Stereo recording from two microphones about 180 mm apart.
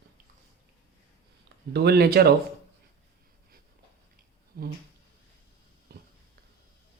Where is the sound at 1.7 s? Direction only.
60° right (ahead or behind).